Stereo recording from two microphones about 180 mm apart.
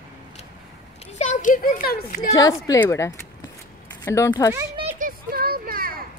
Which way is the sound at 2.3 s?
20° left (ahead or behind).